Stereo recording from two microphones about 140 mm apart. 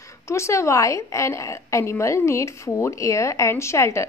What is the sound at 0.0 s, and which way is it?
A woman's voice, 20° left (ahead or behind).